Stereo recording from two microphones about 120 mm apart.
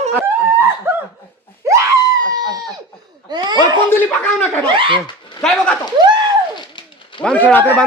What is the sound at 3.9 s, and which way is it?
Speech, 15° left (ahead or behind).